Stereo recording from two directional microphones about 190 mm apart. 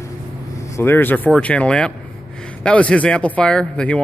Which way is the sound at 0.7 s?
10° left (ahead or behind).